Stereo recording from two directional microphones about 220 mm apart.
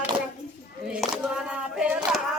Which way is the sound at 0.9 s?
5° right (ahead or behind).